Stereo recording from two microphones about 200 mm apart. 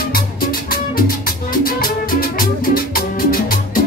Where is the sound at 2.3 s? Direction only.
45° left (ahead or behind).